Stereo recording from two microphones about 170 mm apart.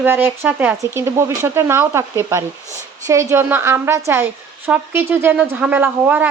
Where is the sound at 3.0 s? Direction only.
15° right (ahead or behind).